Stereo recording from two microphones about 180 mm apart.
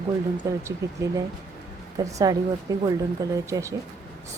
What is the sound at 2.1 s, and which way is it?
A woman's voice, 20° right (ahead or behind).